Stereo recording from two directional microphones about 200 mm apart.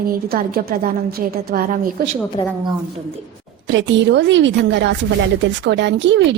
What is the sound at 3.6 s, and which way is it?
A woman's voice, 65° right (ahead or behind).